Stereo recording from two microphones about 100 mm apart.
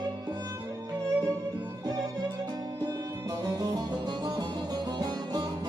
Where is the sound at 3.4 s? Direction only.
45° right (ahead or behind).